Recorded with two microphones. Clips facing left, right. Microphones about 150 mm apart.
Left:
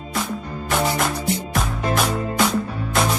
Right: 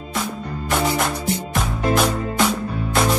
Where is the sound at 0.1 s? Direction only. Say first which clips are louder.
Even; centre (ahead or behind).